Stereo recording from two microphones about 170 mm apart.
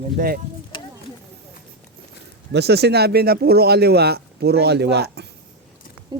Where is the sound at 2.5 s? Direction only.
75° right (ahead or behind).